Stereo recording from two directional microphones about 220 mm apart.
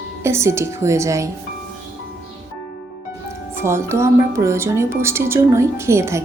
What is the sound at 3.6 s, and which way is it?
A woman's voice, 10° right (ahead or behind).